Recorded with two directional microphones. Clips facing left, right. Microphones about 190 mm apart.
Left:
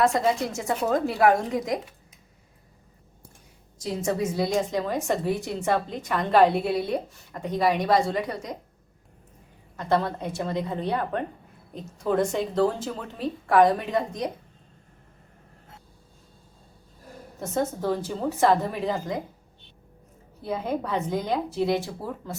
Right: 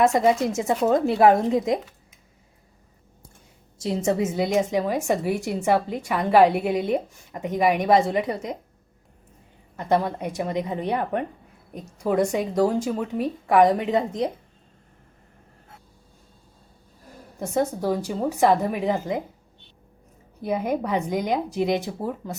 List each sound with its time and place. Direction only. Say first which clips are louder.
0.0 s a woman's voice: right 4 dB; 20° right (ahead or behind)
3.8 s a woman's voice: right 4 dB; 25° right (ahead or behind)
9.7 s a woman's voice: right 2 dB; 15° right (ahead or behind)
17.4 s a woman's voice: right 3 dB; 15° right (ahead or behind)
20.4 s a woman's voice: right 4 dB; 15° right (ahead or behind)